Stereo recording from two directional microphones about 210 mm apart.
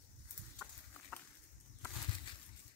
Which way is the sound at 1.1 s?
5° right (ahead or behind).